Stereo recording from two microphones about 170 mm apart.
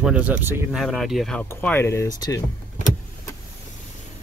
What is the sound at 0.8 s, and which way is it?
Speech, centre (ahead or behind).